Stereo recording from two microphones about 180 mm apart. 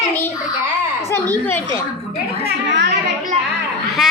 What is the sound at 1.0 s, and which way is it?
Speech, 10° left (ahead or behind).